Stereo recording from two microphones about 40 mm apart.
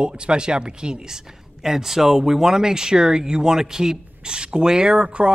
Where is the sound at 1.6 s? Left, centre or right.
Centre.